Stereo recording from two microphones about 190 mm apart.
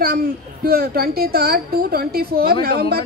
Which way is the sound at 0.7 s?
55° right (ahead or behind).